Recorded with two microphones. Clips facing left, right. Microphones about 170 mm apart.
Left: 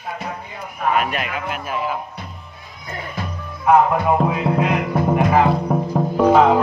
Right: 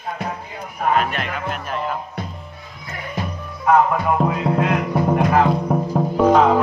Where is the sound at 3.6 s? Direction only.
5° left (ahead or behind).